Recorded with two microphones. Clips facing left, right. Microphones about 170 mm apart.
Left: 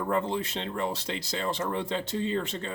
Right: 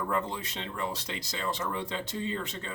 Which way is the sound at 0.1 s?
25° left (ahead or behind).